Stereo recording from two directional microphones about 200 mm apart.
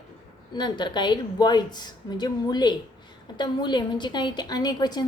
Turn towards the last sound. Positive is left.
turn(degrees=20)  # may be behind; listen again after turning